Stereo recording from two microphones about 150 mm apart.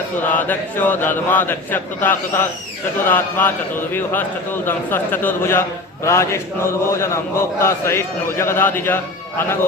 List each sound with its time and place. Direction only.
0.2 s a man's voice: 10° left (ahead or behind)